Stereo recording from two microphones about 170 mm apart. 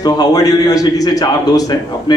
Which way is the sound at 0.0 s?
20° left (ahead or behind).